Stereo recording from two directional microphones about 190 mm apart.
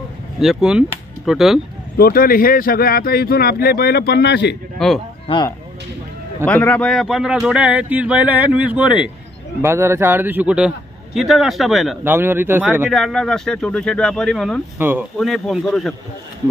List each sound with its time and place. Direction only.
0.4 s speech: centre (ahead or behind)
2.0 s speech: 50° left (ahead or behind)
4.7 s a man's voice: centre (ahead or behind)
5.3 s speech: 30° left (ahead or behind)
6.4 s speech: 10° left (ahead or behind)
12.0 s speech: 10° right (ahead or behind)
12.9 s speech: centre (ahead or behind)
14.8 s speech: 10° right (ahead or behind)
15.1 s speech: centre (ahead or behind)